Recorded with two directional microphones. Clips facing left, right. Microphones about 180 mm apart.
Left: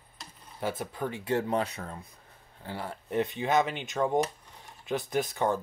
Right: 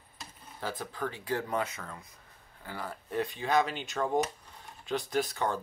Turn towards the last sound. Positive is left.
turn(degrees=20)  # may be behind; listen again after turning